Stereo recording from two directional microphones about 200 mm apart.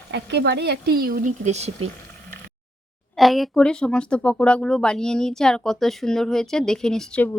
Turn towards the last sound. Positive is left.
turn(degrees=5)  # may be behind; listen again after turning